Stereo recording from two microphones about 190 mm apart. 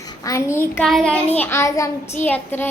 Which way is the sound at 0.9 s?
5° left (ahead or behind).